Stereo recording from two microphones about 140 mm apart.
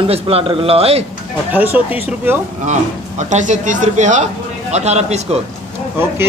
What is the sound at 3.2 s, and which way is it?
Speech, 60° right (ahead or behind).